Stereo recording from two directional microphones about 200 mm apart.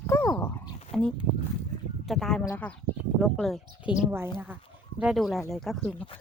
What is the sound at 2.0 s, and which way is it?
A woman's voice, centre (ahead or behind).